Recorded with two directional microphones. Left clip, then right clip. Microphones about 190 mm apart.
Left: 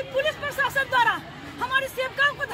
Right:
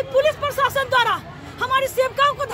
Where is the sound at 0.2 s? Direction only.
20° right (ahead or behind).